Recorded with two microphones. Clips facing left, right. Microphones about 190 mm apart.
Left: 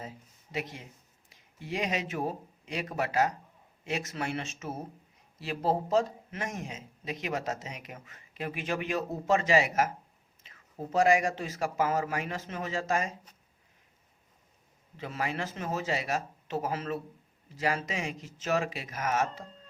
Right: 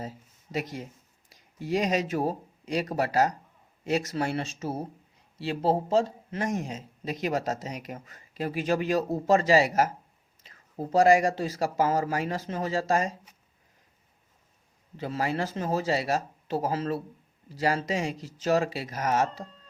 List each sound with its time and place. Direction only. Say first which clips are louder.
0.0 s speech: right 5 dB; 40° right (ahead or behind)
14.9 s speech: right 5 dB; 35° right (ahead or behind)